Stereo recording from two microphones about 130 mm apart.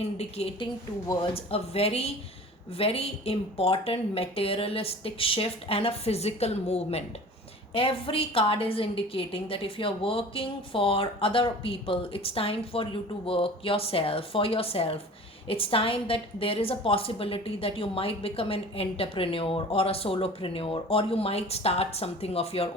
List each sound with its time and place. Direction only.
0.4 s a woman's voice: 50° left (ahead or behind)
1.0 s a woman's voice: 35° left (ahead or behind); by 7.0 s 55° left (ahead or behind)
7.7 s a woman's voice: 45° left (ahead or behind)